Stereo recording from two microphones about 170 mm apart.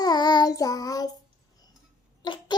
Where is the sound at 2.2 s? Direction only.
25° left (ahead or behind).